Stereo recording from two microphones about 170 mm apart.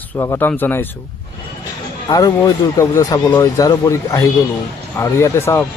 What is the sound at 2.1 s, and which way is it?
A man's voice, 20° left (ahead or behind).